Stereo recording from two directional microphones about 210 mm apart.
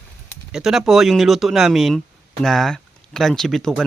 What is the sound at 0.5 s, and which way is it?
Speech, centre (ahead or behind).